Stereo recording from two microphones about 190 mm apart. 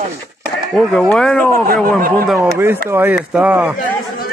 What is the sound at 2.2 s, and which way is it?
Speech, centre (ahead or behind).